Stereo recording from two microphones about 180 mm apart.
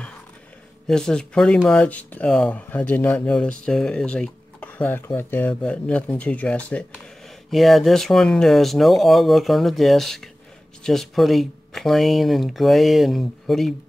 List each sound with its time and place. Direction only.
0.8 s speech: 5° left (ahead or behind)